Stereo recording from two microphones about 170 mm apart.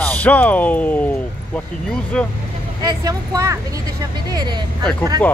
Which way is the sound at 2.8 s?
20° right (ahead or behind).